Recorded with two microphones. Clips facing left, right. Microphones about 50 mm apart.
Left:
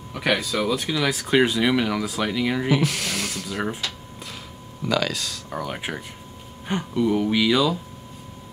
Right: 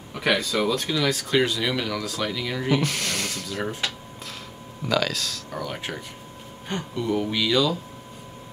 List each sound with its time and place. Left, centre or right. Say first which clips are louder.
0.1 s speech: even; centre
2.7 s speech: left 1 dB; centre
3.4 s speech: left 4 dB; centre
4.8 s speech: left 1 dB; centre
5.5 s speech: left 4 dB; centre